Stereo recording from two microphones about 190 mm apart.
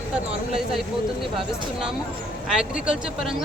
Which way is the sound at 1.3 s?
5° right (ahead or behind).